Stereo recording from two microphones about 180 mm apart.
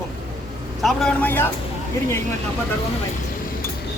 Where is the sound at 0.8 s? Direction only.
5° left (ahead or behind).